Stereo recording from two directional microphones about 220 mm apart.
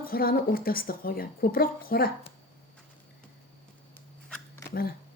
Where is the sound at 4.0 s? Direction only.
5° left (ahead or behind).